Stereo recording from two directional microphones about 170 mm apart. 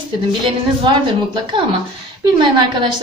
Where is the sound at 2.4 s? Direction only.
30° right (ahead or behind).